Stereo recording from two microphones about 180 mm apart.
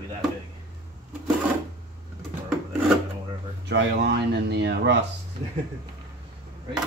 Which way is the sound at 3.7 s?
70° right (ahead or behind).